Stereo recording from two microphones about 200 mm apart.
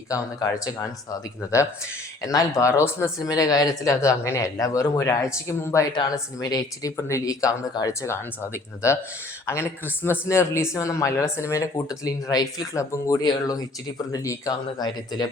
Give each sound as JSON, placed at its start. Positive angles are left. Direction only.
{"t": 0.1, "sound": "speech", "side_deg": 15}